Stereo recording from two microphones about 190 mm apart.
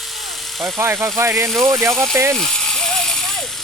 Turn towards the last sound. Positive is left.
turn(degrees=0)  # may be behind; listen again after turning